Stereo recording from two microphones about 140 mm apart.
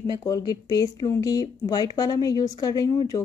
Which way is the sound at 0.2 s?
25° left (ahead or behind).